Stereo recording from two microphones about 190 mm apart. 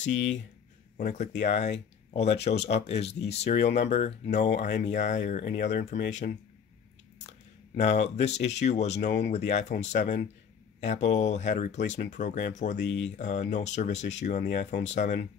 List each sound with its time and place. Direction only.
0.0 s speech: 75° left (ahead or behind)
0.9 s speech: 40° left (ahead or behind)
7.7 s speech: 35° left (ahead or behind)
12.8 s speech: 70° left (ahead or behind)
13.1 s speech: 40° left (ahead or behind)